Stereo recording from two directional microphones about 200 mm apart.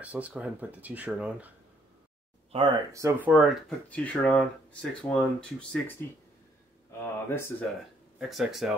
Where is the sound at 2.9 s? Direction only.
10° right (ahead or behind).